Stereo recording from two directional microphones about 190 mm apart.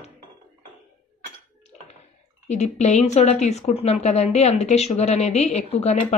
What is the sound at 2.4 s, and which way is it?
Speech, 35° left (ahead or behind).